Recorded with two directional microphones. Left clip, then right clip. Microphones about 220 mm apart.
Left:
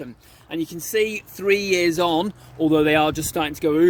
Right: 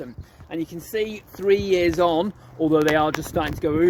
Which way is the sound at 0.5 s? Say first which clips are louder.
Left 4 dB; 40° left (ahead or behind).